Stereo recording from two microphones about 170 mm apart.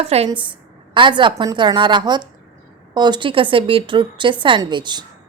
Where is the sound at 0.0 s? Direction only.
35° right (ahead or behind).